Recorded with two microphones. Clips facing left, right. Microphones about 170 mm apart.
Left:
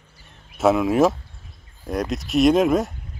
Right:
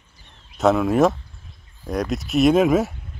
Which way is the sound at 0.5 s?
Centre (ahead or behind).